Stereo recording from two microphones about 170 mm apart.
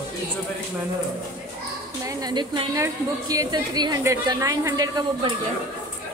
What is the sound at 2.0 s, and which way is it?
A woman's voice, 25° right (ahead or behind).